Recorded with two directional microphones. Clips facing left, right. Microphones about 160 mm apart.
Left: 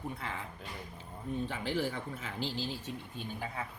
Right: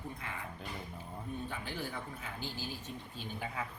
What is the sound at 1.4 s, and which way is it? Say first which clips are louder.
A woman's voice: left 7 dB; 90° left.